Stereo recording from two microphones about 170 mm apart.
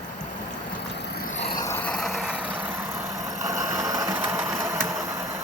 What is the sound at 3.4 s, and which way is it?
Sewing machine, 20° right (ahead or behind).